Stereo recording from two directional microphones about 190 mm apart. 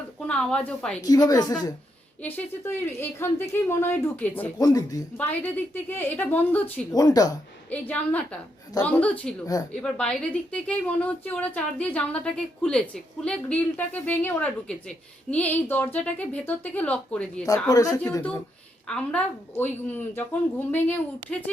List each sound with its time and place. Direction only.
0.3 s speech: 5° left (ahead or behind)
1.0 s a woman's voice: 20° left (ahead or behind)
6.9 s a woman's voice: 20° left (ahead or behind)
7.7 s a woman's voice: 5° left (ahead or behind)
17.4 s a woman's voice: 20° left (ahead or behind)